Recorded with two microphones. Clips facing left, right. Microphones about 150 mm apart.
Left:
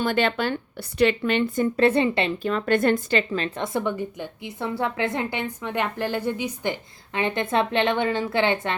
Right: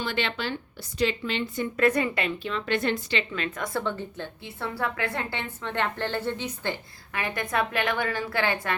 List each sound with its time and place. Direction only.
0.0 s a woman's voice: 50° left (ahead or behind)
1.7 s a woman's voice: 30° left (ahead or behind)
2.4 s a woman's voice: 45° left (ahead or behind)
3.3 s a woman's voice: 30° left (ahead or behind)